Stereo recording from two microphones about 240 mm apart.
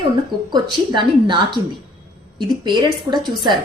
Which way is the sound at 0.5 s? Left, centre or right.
Centre.